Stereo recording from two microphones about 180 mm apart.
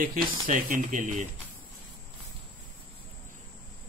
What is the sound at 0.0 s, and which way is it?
Speech, 50° right (ahead or behind).